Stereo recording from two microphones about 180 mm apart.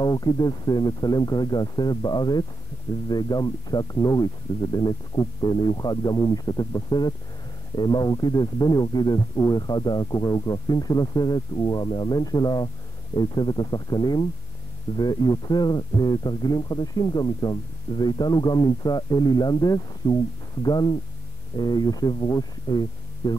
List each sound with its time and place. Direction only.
0.0 s speech: 20° left (ahead or behind)